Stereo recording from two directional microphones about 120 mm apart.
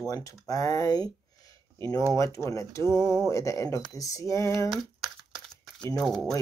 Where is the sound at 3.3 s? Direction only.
25° left (ahead or behind).